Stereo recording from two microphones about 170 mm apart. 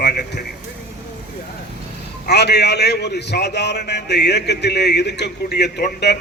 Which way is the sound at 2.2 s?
75° left (ahead or behind).